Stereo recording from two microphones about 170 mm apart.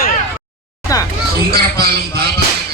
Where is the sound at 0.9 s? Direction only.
20° left (ahead or behind).